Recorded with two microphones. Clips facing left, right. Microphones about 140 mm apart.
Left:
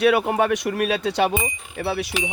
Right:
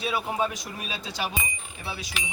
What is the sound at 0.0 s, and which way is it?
Speech, 70° left (ahead or behind).